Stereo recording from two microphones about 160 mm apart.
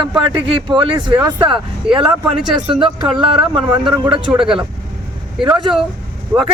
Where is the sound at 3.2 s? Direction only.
30° right (ahead or behind).